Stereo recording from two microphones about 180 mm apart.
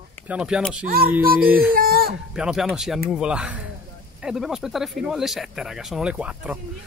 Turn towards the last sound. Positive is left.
turn(degrees=-5)  # may be behind; listen again after turning